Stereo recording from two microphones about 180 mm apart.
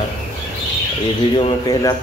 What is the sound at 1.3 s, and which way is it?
Speech, 25° left (ahead or behind).